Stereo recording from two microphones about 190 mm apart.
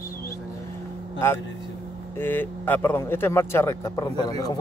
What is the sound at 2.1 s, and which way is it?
Speech, 10° left (ahead or behind).